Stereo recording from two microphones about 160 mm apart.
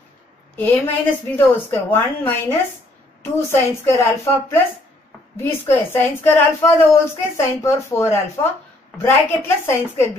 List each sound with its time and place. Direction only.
0.6 s a woman's voice: 10° left (ahead or behind)